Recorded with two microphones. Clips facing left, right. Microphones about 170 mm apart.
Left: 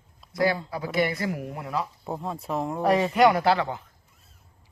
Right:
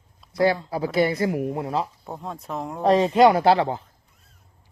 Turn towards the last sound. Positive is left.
turn(degrees=-30)  # may be behind; listen again after turning